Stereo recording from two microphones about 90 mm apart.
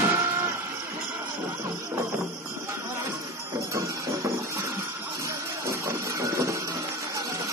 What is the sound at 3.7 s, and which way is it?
Music, 35° right (ahead or behind).